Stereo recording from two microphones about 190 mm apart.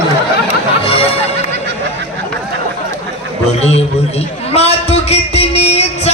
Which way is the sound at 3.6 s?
35° left (ahead or behind).